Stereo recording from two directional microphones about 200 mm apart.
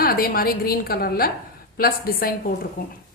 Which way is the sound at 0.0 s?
50° left (ahead or behind).